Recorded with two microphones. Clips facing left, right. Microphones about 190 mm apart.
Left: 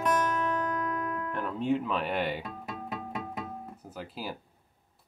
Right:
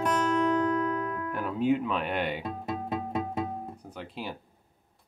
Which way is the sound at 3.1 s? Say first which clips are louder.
Right 6 dB; 25° right (ahead or behind).